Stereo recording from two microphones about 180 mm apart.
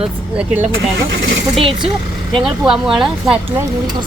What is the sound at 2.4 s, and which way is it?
Speech, 5° right (ahead or behind).